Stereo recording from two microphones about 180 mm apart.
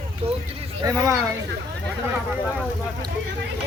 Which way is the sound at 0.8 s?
20° right (ahead or behind).